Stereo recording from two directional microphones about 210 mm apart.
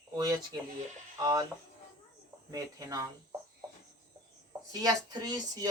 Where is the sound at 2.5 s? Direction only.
15° right (ahead or behind).